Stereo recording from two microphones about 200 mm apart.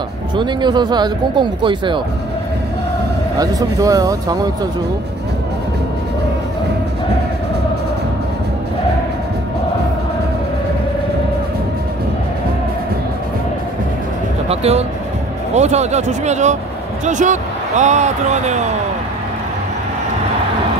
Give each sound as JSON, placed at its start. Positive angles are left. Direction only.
{"t": 0.4, "sound": "speech", "side_deg": -20}
{"t": 3.3, "sound": "speech", "side_deg": -15}
{"t": 14.5, "sound": "speech", "side_deg": -30}